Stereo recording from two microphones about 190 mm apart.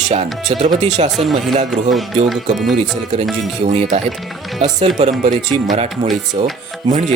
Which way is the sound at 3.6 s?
35° right (ahead or behind).